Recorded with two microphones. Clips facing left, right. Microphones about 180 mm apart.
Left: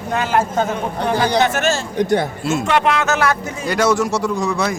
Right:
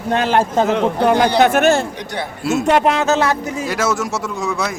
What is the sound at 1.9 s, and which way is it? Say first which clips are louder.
Speech: left 9 dB; 50° left (ahead or behind).